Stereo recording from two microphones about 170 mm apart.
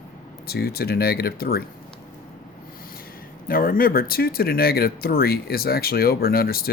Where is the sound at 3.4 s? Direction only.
55° left (ahead or behind).